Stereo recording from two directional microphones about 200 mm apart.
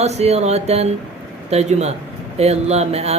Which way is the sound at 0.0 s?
35° right (ahead or behind).